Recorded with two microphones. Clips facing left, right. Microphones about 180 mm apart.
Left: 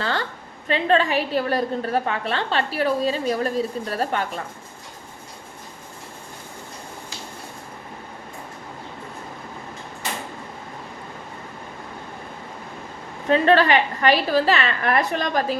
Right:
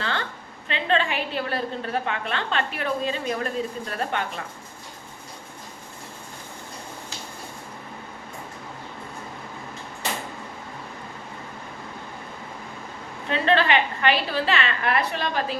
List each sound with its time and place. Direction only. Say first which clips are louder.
0.7 s a woman's voice: left 5 dB; 40° left (ahead or behind)
13.2 s a woman's voice: left 5 dB; 45° left (ahead or behind)